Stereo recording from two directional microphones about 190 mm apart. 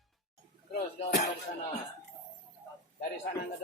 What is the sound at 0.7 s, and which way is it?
Music, 60° left (ahead or behind).